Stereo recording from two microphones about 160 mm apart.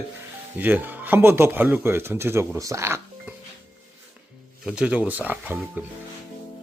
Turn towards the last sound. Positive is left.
turn(degrees=-10)  # may be behind; listen again after turning